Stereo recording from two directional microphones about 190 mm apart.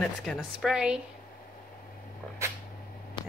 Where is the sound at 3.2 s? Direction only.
25° left (ahead or behind).